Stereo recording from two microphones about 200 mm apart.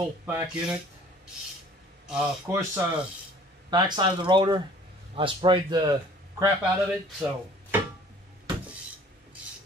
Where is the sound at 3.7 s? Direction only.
20° right (ahead or behind).